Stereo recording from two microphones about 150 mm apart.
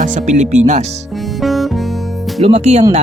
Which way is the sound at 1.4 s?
Centre (ahead or behind).